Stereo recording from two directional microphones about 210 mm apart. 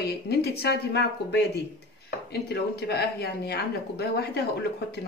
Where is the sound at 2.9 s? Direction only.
50° left (ahead or behind).